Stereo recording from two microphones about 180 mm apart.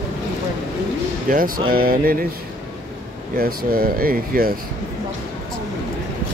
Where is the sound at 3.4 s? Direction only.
55° right (ahead or behind).